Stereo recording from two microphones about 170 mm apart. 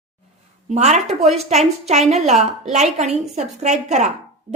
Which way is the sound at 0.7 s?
40° right (ahead or behind).